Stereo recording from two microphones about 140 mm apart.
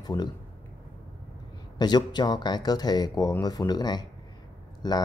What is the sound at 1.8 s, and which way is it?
Speech, 30° left (ahead or behind).